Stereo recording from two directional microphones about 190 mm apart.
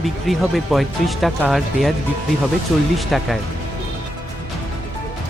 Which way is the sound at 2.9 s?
Centre (ahead or behind).